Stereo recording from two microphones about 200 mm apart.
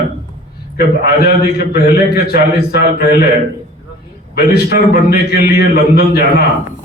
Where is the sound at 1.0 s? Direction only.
50° left (ahead or behind).